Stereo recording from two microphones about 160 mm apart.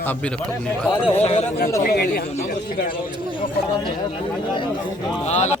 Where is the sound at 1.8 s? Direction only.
80° left.